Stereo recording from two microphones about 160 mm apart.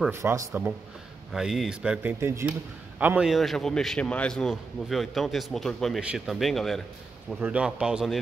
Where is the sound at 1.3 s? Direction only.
Centre (ahead or behind).